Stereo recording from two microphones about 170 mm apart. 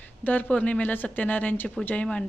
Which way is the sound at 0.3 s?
10° left (ahead or behind).